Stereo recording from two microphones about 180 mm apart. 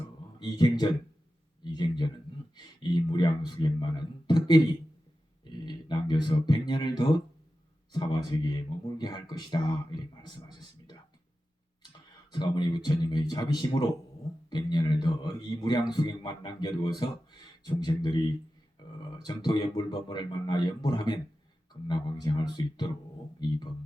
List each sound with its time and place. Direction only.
0.3 s a man's voice: 20° left (ahead or behind)
5.6 s a man's voice: 25° left (ahead or behind)
12.3 s a man's voice: 25° left (ahead or behind)
18.8 s a sound: 25° left (ahead or behind)
19.2 s a man's voice: 20° left (ahead or behind)